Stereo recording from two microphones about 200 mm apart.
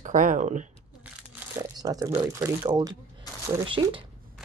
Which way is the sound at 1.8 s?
20° right (ahead or behind).